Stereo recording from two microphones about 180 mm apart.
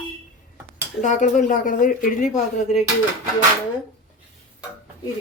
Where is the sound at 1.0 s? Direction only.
45° left (ahead or behind).